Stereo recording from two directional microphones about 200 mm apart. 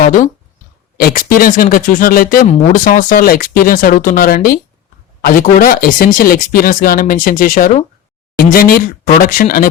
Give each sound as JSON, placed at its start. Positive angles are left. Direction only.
{"t": 0.0, "sound": "speech", "side_deg": 40}